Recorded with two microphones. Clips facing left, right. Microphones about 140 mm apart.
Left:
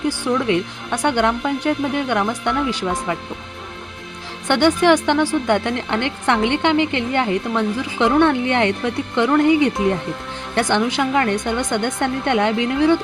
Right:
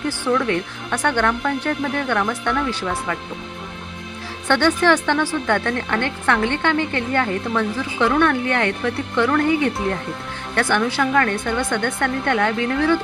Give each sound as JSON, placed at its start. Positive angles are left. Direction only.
{"t": 0.1, "sound": "a woman's voice", "side_deg": 15}
{"t": 4.4, "sound": "a woman's voice", "side_deg": 15}